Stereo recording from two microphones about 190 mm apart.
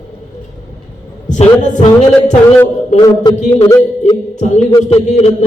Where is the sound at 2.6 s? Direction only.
15° left (ahead or behind).